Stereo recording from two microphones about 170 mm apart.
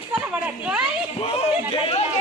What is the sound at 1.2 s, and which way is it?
Speech, 35° left (ahead or behind).